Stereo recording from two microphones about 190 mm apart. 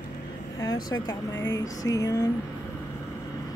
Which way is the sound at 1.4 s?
20° left (ahead or behind).